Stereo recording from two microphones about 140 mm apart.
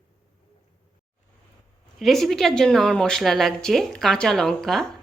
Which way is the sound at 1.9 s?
Centre (ahead or behind).